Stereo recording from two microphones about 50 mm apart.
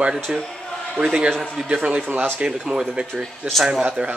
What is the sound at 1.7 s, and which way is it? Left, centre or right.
Speech, right.